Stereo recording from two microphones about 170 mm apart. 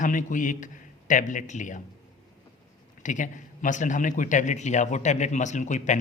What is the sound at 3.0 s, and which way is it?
A man's voice, 50° left (ahead or behind).